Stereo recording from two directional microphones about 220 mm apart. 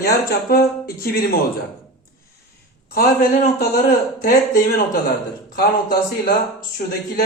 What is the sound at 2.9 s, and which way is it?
Speech, 40° left (ahead or behind).